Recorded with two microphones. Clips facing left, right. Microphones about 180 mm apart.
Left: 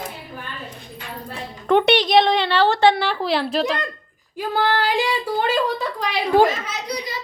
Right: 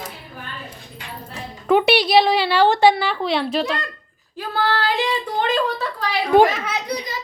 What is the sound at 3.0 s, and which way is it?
Speech, centre (ahead or behind).